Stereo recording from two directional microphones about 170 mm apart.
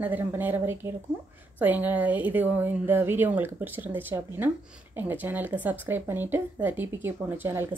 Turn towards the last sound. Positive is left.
turn(degrees=-15)  # may be behind; listen again after turning